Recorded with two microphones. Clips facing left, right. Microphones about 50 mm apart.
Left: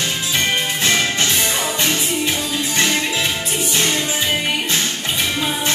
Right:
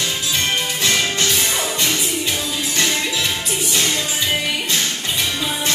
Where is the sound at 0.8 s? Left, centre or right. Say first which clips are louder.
Left 1 dB; left.